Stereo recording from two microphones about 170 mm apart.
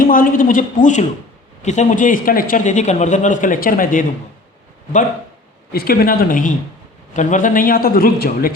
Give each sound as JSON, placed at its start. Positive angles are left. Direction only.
{"t": 0.0, "sound": "speech", "side_deg": 55}
{"t": 5.7, "sound": "a man's voice", "side_deg": 65}